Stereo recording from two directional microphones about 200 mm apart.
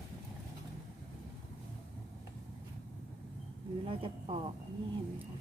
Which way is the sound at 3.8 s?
25° right (ahead or behind).